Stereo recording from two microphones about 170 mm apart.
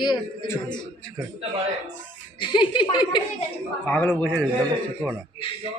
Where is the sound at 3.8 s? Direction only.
10° left (ahead or behind).